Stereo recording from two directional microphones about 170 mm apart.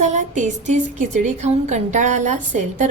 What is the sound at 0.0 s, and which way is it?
A woman's voice, 45° right (ahead or behind).